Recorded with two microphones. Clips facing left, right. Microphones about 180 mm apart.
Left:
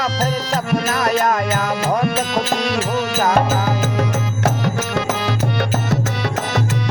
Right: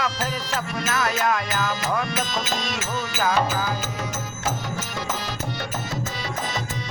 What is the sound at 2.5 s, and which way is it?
Music, 65° left (ahead or behind).